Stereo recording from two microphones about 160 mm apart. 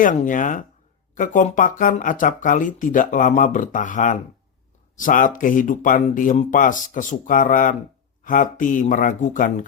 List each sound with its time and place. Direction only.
0.0 s speech: 55° left (ahead or behind)